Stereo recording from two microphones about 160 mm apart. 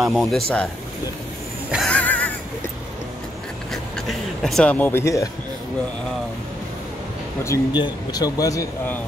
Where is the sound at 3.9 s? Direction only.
Centre (ahead or behind); by 5.2 s 15° left (ahead or behind).